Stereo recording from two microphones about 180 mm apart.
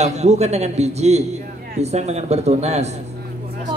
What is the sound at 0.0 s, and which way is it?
A man's voice, 40° right (ahead or behind).